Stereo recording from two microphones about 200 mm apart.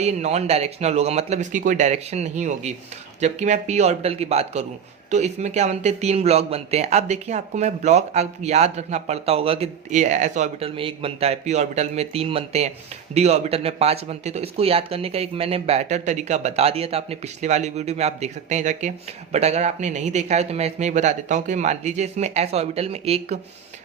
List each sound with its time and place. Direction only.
0.0 s speech: 35° right (ahead or behind)